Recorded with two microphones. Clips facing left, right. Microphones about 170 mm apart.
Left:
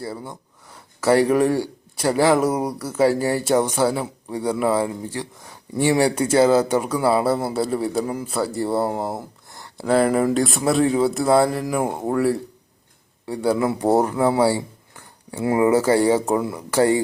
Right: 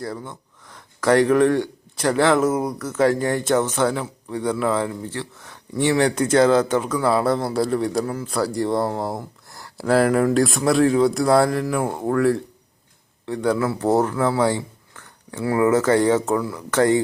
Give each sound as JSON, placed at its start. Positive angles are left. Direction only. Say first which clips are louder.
{"t": 0.0, "sound": "speech", "louder": "right 1 dB", "side_deg": 5}
{"t": 8.3, "sound": "speech", "louder": "right 1 dB", "side_deg": 0}